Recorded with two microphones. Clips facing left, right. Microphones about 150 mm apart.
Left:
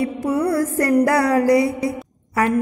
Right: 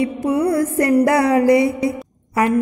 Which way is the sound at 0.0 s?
15° right (ahead or behind).